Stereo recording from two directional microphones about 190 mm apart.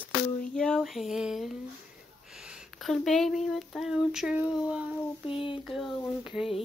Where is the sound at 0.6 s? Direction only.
Centre (ahead or behind).